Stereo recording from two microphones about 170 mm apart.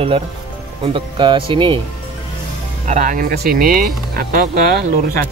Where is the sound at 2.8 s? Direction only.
50° right (ahead or behind).